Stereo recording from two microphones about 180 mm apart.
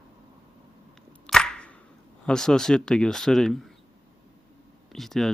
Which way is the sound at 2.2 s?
5° left (ahead or behind).